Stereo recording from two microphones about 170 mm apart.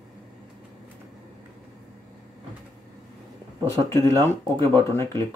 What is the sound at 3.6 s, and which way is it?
Speech, 15° left (ahead or behind).